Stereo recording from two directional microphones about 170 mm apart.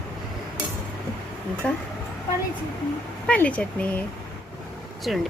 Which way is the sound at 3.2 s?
10° left (ahead or behind).